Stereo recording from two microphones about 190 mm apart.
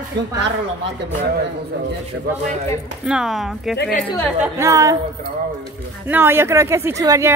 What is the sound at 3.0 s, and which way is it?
Speech, 5° right (ahead or behind).